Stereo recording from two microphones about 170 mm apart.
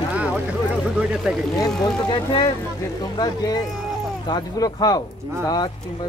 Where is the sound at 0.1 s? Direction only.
5° right (ahead or behind).